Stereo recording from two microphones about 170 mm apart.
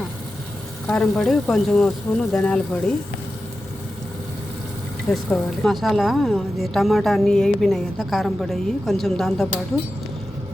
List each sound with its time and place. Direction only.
0.9 s a woman's voice: 5° left (ahead or behind)
5.0 s a woman's voice: centre (ahead or behind)